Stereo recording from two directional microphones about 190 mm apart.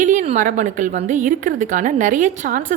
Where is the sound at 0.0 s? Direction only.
40° right (ahead or behind).